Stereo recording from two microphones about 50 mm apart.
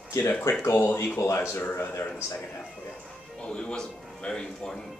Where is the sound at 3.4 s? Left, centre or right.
Centre.